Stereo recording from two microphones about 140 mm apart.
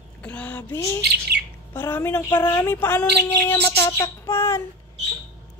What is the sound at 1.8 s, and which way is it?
Chirp, 15° left (ahead or behind).